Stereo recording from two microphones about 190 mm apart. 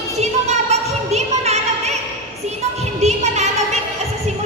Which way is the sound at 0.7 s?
35° right (ahead or behind).